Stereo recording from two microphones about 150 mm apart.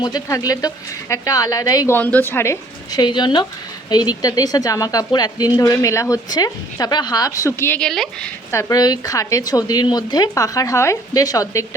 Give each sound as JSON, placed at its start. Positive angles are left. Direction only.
{"t": 0.0, "sound": "speech", "side_deg": 25}
{"t": 2.0, "sound": "a woman's voice", "side_deg": 10}
{"t": 7.9, "sound": "speech", "side_deg": 0}
{"t": 8.5, "sound": "speech", "side_deg": 25}